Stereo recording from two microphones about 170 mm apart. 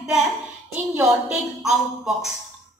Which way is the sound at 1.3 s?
Centre (ahead or behind).